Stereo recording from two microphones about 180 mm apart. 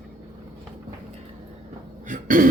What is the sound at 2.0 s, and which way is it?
Cough, 45° right (ahead or behind).